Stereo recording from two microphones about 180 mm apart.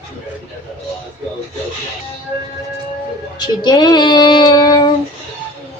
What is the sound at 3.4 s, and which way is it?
Child singing, 25° left (ahead or behind).